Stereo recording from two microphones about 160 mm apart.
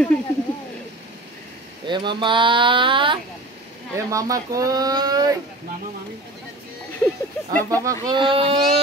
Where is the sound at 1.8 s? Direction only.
30° right (ahead or behind).